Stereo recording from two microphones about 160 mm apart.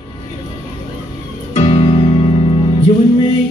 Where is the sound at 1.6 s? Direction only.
35° left (ahead or behind).